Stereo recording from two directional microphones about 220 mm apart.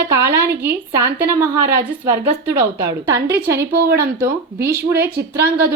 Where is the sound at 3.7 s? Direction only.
45° right (ahead or behind).